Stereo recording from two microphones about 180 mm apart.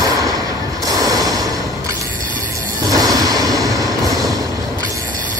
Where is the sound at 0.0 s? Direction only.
20° right (ahead or behind).